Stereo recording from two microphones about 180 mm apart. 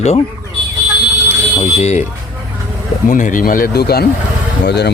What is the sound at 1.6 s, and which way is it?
Speech, 35° left (ahead or behind).